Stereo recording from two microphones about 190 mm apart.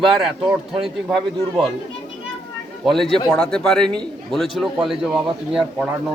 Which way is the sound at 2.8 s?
Centre (ahead or behind).